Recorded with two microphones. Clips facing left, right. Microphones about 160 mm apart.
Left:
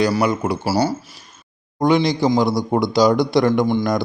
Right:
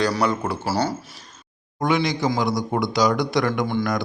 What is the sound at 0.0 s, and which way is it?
A man's voice, 10° left (ahead or behind).